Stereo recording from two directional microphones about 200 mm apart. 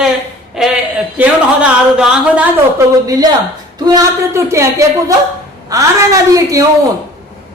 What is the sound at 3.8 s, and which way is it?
Speech, 15° right (ahead or behind).